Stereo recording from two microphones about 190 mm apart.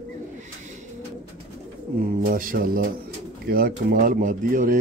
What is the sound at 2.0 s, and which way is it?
Speech, 45° right (ahead or behind).